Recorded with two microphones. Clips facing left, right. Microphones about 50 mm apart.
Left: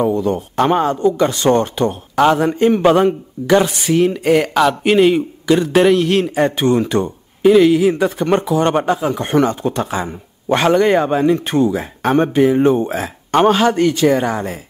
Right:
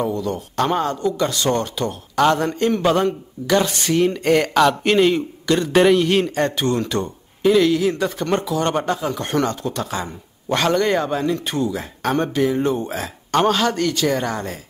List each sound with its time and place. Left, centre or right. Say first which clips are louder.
0.0 s speech: left 6 dB; left
2.1 s speech: left 4 dB; centre